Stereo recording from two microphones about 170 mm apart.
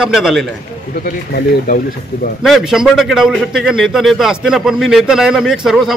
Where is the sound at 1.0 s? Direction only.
60° left (ahead or behind).